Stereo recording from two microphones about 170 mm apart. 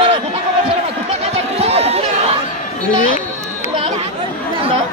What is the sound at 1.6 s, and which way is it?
Chatter, 35° right (ahead or behind).